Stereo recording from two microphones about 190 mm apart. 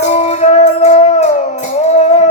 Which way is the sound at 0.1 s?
35° left (ahead or behind).